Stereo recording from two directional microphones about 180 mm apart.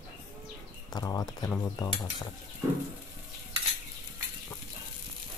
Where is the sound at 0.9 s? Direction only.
20° left (ahead or behind).